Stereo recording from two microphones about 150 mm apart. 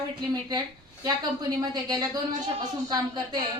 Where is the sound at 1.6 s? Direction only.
25° right (ahead or behind).